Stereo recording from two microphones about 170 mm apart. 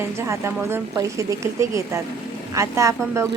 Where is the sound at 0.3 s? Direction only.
15° right (ahead or behind).